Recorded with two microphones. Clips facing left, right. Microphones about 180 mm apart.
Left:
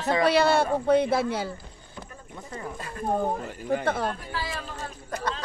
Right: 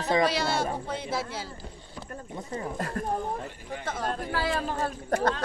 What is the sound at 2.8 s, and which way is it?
Speech, 60° right (ahead or behind).